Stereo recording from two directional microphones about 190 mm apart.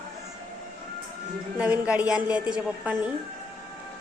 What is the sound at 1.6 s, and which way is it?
A woman's voice, 5° right (ahead or behind).